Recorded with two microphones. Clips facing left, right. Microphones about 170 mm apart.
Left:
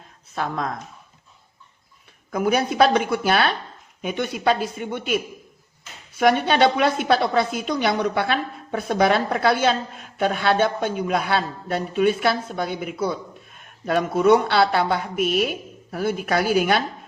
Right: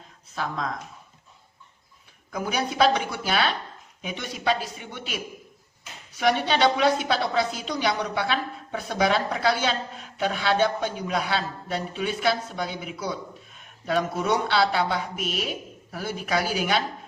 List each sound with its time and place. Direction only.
0.3 s a woman's voice: 55° left (ahead or behind)
2.3 s a woman's voice: 55° left (ahead or behind)